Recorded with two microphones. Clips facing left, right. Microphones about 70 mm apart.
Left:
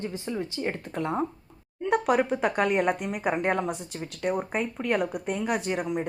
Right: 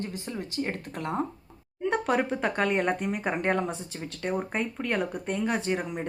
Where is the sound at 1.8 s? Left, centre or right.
Centre.